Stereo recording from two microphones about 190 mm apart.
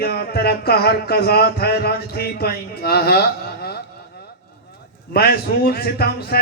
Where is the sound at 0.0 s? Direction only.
55° left (ahead or behind).